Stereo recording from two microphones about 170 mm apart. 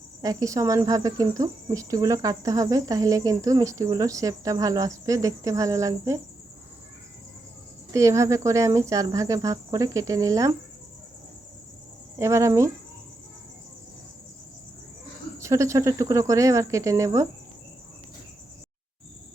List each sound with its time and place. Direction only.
0.2 s speech: 20° right (ahead or behind)
7.9 s speech: 15° right (ahead or behind)
12.2 s speech: 15° right (ahead or behind)
15.4 s speech: 15° right (ahead or behind)